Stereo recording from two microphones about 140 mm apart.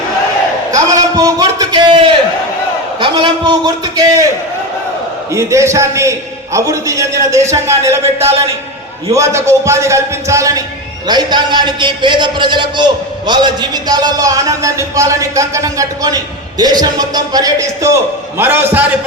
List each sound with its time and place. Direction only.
0.7 s a sound: 25° right (ahead or behind)
3.0 s a man's voice: 35° right (ahead or behind)
5.3 s a man's voice: 20° right (ahead or behind)
9.1 s a man's voice: 20° right (ahead or behind)